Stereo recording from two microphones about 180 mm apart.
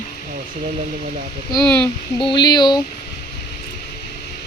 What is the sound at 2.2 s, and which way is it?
Speech, 25° left (ahead or behind).